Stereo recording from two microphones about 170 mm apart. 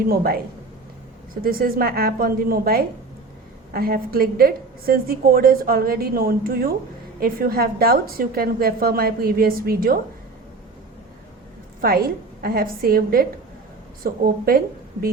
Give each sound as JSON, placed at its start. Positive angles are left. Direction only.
{"t": 0.1, "sound": "a woman's voice", "side_deg": -60}
{"t": 11.8, "sound": "a woman's voice", "side_deg": -60}